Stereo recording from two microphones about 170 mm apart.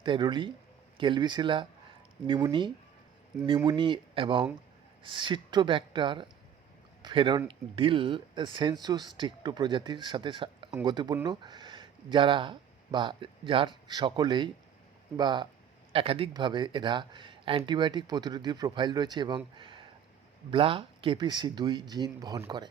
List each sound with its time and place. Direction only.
0.0 s speech: 25° right (ahead or behind)
19.5 s a sound: 30° right (ahead or behind)
20.5 s speech: 30° right (ahead or behind)